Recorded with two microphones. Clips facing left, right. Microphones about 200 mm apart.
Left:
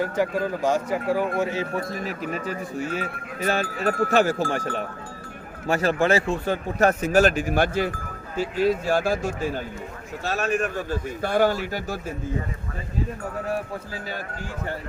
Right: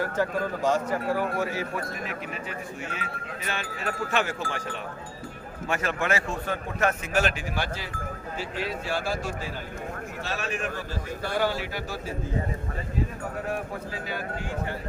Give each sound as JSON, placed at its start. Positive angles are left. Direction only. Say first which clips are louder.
{"t": 0.0, "sound": "a man's voice", "louder": "left 3 dB", "side_deg": 10}